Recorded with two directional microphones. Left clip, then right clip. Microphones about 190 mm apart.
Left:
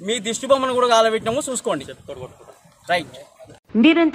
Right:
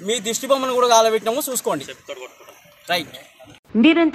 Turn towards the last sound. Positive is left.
turn(degrees=0)  # may be behind; listen again after turning